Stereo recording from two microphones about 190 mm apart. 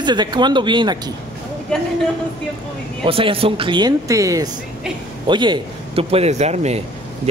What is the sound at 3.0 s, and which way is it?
A woman's voice, 30° right (ahead or behind).